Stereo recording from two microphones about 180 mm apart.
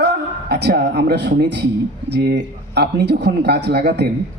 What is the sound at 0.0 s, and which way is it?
Speech, 65° right (ahead or behind).